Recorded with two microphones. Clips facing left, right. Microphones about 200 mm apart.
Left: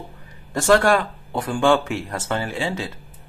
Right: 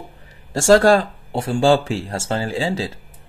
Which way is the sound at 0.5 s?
30° right (ahead or behind).